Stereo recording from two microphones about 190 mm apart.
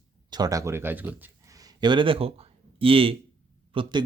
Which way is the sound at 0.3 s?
20° right (ahead or behind).